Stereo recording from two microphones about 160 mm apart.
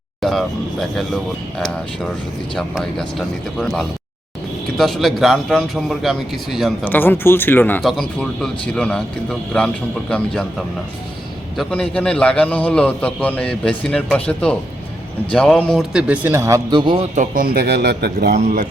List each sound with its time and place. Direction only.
0.2 s a man's voice: centre (ahead or behind)
6.8 s a man's voice: 10° left (ahead or behind)
7.8 s a man's voice: centre (ahead or behind)
11.5 s a man's voice: 5° left (ahead or behind); by 16.6 s 15° right (ahead or behind)
16.6 s a man's voice: 30° right (ahead or behind)
17.2 s a man's voice: 65° right (ahead or behind); by 18.3 s 85° right